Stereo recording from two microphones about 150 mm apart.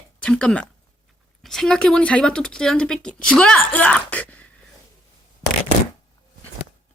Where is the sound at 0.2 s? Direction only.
5° left (ahead or behind).